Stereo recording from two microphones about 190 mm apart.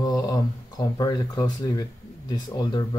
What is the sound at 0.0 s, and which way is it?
Speech, 20° left (ahead or behind).